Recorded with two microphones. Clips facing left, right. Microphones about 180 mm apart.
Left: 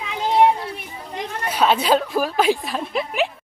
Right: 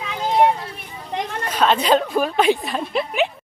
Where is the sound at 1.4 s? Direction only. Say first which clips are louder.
Even; 10° left (ahead or behind).